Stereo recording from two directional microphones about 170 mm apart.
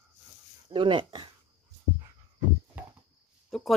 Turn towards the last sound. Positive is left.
turn(degrees=0)  # may be behind; listen again after turning